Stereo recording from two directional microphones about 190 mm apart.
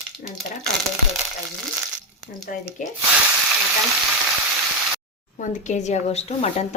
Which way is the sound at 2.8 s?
45° left (ahead or behind).